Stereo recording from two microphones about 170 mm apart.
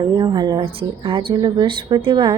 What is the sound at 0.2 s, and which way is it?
A woman's voice, 25° right (ahead or behind).